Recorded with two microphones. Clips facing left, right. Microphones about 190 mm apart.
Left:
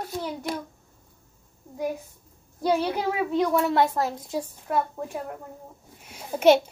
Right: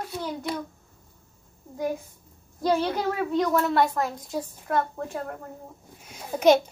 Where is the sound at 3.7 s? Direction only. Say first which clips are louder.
Left 1 dB; 20° left (ahead or behind).